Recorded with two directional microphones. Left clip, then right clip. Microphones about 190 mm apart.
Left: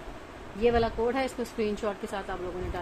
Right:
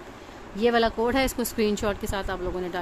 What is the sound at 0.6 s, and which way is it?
Speech, 60° right (ahead or behind).